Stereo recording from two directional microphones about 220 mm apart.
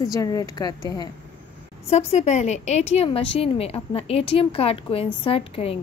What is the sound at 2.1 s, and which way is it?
A woman's voice, 30° left (ahead or behind).